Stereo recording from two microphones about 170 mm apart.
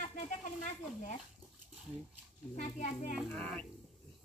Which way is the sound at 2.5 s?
45° left (ahead or behind).